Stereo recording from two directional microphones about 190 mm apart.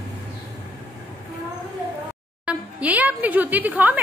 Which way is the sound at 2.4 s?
10° right (ahead or behind).